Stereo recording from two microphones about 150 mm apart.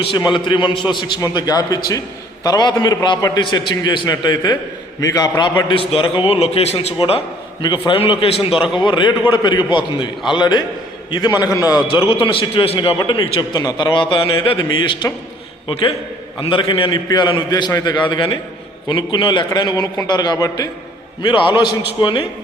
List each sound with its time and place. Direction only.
0.3 s a man's voice: 30° left (ahead or behind)
8.8 s a man's voice: 30° left (ahead or behind)
11.9 s a man's voice: 35° left (ahead or behind)
13.6 s a man's voice: 25° left (ahead or behind)